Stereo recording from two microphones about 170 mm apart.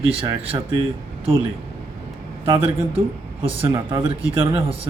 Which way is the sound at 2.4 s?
30° right (ahead or behind).